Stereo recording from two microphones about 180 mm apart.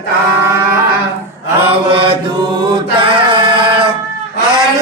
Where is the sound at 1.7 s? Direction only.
30° right (ahead or behind).